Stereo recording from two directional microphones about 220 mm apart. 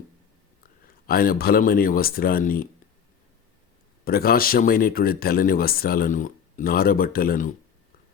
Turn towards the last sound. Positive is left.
turn(degrees=40)  # may be behind; listen again after turning